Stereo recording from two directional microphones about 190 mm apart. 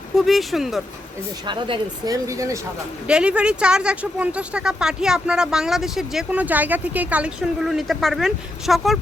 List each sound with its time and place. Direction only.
0.2 s speech: centre (ahead or behind)
1.5 s speech: 25° right (ahead or behind)
3.1 s speech: 5° right (ahead or behind)